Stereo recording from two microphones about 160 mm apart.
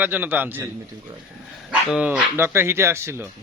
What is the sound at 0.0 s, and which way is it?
Speech, 10° right (ahead or behind).